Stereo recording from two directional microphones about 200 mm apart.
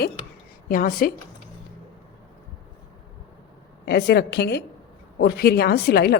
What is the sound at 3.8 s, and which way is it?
A woman's voice, 55° left (ahead or behind).